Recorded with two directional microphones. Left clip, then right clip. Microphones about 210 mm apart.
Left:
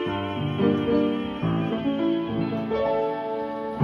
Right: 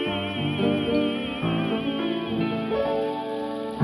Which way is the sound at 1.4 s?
50° right (ahead or behind).